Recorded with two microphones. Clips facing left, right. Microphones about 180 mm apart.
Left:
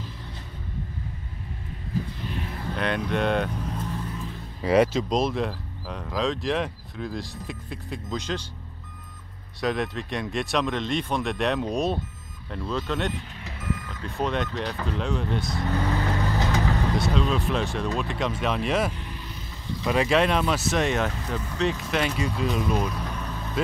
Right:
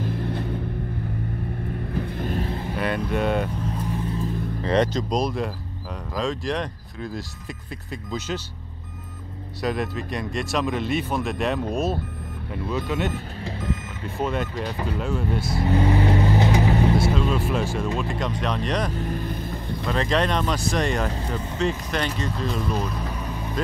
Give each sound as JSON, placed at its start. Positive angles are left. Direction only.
{"t": 0.0, "sound": "vehicle", "side_deg": -55}
{"t": 2.0, "sound": "vehicle", "side_deg": -55}
{"t": 2.7, "sound": "speech", "side_deg": -5}
{"t": 4.6, "sound": "speech", "side_deg": 5}
{"t": 9.6, "sound": "speech", "side_deg": 0}
{"t": 13.4, "sound": "reversing beeps", "side_deg": -30}
{"t": 14.0, "sound": "speech", "side_deg": 0}
{"t": 15.4, "sound": "vehicle", "side_deg": -25}
{"t": 17.1, "sound": "speech", "side_deg": -5}
{"t": 18.9, "sound": "vehicle", "side_deg": -45}
{"t": 19.9, "sound": "speech", "side_deg": 5}